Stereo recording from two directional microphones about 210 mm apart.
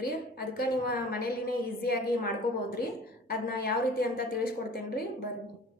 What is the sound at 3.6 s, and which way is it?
A woman's voice, 45° left (ahead or behind).